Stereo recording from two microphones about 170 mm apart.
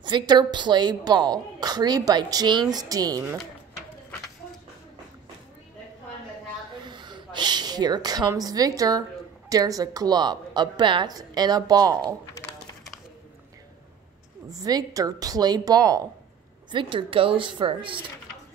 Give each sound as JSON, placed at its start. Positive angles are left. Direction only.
{"t": 0.0, "sound": "a woman's voice", "side_deg": -25}
{"t": 6.8, "sound": "a woman's voice", "side_deg": -25}
{"t": 14.5, "sound": "a woman's voice", "side_deg": -20}